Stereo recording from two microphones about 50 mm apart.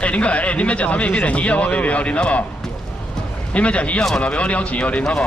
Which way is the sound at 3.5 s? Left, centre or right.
Left.